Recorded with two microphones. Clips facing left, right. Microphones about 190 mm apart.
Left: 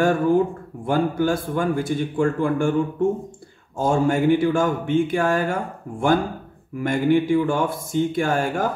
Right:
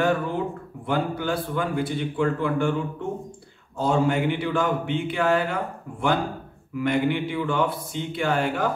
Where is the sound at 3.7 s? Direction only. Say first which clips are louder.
Left 2 dB; 45° left (ahead or behind).